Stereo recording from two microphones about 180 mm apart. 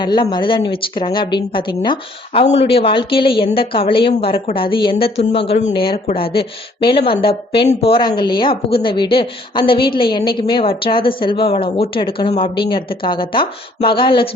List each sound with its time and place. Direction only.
0.0 s a woman's voice: 25° left (ahead or behind)